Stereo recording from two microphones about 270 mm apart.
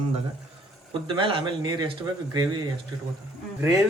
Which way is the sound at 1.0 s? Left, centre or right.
Centre.